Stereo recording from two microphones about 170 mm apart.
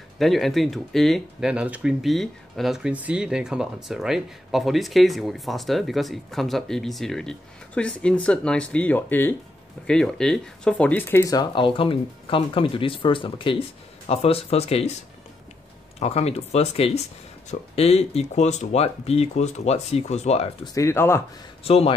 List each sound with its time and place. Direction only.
0.2 s speech: centre (ahead or behind); by 15.0 s 35° left (ahead or behind)
16.0 s speech: 40° left (ahead or behind)
20.6 s speech: 20° left (ahead or behind)
21.6 s speech: 35° left (ahead or behind)